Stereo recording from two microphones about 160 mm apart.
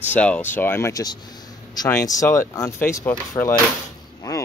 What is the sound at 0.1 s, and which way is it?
Speech, 10° left (ahead or behind).